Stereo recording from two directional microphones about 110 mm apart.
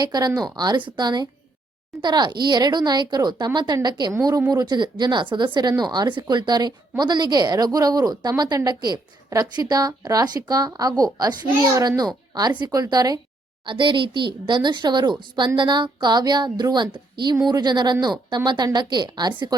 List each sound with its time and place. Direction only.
0.0 s speech: 40° right (ahead or behind)
13.7 s speech: 45° right (ahead or behind)